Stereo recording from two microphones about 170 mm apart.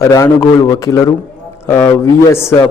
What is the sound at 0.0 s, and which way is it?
A man's voice, 20° left (ahead or behind).